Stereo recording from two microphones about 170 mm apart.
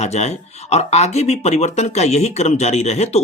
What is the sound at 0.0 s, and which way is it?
Speech, 40° left (ahead or behind).